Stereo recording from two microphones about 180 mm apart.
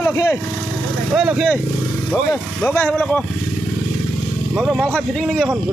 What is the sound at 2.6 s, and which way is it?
Speech, 10° left (ahead or behind).